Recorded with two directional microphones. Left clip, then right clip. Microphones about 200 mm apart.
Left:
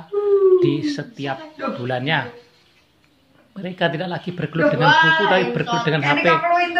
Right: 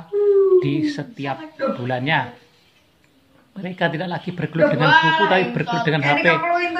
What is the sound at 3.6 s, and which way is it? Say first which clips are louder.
A man's voice: left 1 dB; centre (ahead or behind).